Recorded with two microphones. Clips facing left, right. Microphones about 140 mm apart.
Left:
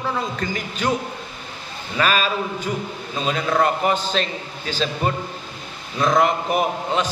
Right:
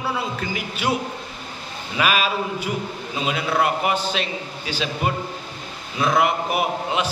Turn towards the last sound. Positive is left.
turn(degrees=-5)  # may be behind; listen again after turning